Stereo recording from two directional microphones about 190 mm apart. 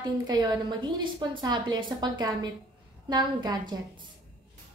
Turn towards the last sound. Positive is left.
turn(degrees=-25)  # may be behind; listen again after turning